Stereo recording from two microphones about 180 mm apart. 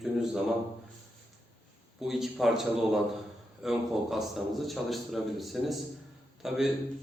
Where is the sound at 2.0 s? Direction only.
Centre (ahead or behind).